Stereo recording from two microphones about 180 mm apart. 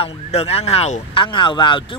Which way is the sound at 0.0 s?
35° left (ahead or behind).